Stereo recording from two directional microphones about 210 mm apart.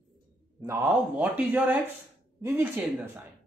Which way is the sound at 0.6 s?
15° right (ahead or behind).